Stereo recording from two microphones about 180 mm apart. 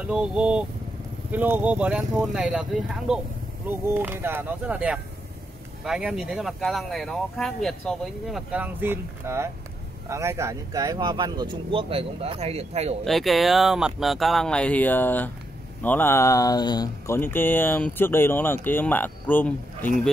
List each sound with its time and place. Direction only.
0.0 s speech: 5° right (ahead or behind); by 12.9 s 35° right (ahead or behind)
13.0 s speech: centre (ahead or behind)